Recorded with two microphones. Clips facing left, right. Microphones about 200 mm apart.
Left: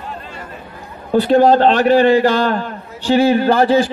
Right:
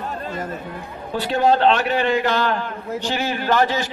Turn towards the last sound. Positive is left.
turn(degrees=30)  # may be behind; listen again after turning